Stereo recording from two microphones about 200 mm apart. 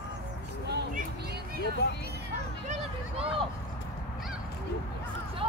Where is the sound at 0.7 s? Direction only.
55° right (ahead or behind).